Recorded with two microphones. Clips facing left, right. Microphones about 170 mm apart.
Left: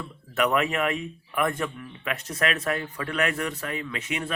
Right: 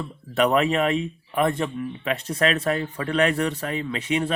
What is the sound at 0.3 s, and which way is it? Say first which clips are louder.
Speech: right 4 dB; 30° right (ahead or behind).